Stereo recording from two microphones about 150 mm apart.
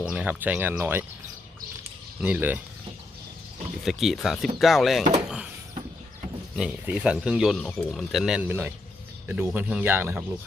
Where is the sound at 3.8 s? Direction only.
Centre (ahead or behind).